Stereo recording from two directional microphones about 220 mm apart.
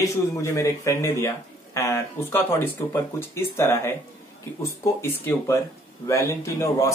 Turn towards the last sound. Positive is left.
turn(degrees=15)  # may be behind; listen again after turning